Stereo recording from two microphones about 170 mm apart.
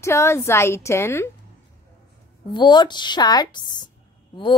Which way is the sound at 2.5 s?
25° left (ahead or behind).